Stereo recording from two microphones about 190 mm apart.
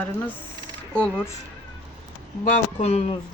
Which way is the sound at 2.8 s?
35° left (ahead or behind).